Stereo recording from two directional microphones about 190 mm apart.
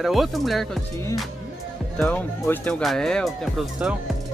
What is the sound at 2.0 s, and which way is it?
Speech, 10° left (ahead or behind).